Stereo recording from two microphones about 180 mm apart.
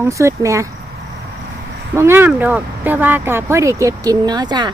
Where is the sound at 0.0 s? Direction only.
15° right (ahead or behind).